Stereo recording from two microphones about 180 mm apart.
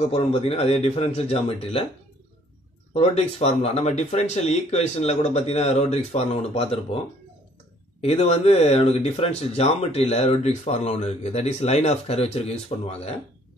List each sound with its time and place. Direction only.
0.0 s speech: 35° left (ahead or behind)
2.9 s speech: 35° left (ahead or behind)
8.0 s speech: 35° left (ahead or behind)